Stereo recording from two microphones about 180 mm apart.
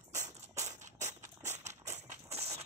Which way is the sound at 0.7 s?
40° right (ahead or behind).